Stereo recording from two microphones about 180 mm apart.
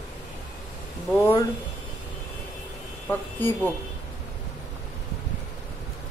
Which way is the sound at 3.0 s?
10° left (ahead or behind).